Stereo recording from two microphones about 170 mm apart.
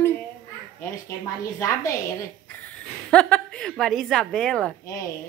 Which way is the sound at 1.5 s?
20° left (ahead or behind).